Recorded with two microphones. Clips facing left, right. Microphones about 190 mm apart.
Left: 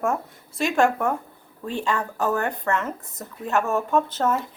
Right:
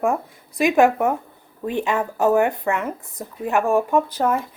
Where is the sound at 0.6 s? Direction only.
20° right (ahead or behind).